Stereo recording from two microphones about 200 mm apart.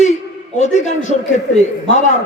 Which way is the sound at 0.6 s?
35° left (ahead or behind).